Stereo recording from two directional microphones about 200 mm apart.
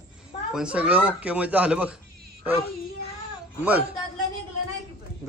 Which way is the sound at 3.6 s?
5° right (ahead or behind).